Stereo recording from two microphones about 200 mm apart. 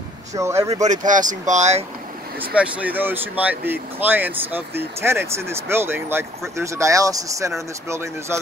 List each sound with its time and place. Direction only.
0.4 s speech: 15° right (ahead or behind)
0.7 s speech: 35° right (ahead or behind)
2.4 s speech: 5° right (ahead or behind)